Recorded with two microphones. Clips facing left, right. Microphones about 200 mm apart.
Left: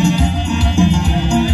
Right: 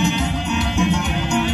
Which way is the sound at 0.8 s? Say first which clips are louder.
Left 7 dB; 30° left (ahead or behind).